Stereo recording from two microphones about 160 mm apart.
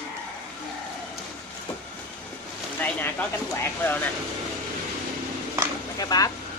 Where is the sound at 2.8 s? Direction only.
10° left (ahead or behind).